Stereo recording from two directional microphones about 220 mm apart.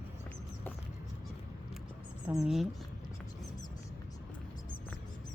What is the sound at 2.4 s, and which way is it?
Speech, centre (ahead or behind).